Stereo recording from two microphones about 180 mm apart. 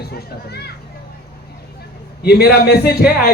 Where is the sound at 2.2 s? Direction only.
60° left (ahead or behind).